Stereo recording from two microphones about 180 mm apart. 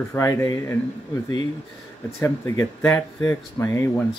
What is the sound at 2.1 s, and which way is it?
Speech, 15° left (ahead or behind).